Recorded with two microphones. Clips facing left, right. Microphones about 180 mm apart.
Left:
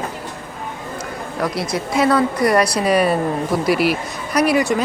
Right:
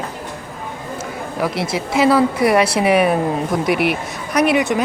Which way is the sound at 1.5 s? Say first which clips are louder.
Right 1 dB; 25° right (ahead or behind).